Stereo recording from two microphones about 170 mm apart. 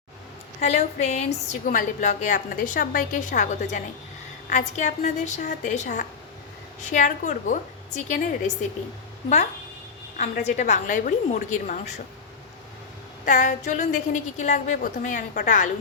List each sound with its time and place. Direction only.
0.6 s a woman's voice: 40° left (ahead or behind)
10.2 s a woman's voice: 45° left (ahead or behind)
13.2 s a woman's voice: 45° left (ahead or behind)